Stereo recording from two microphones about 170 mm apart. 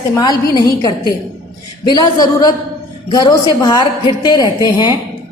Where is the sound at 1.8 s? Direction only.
25° left (ahead or behind).